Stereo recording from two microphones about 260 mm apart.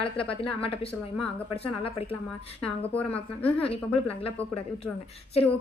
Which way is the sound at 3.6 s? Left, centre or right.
Left.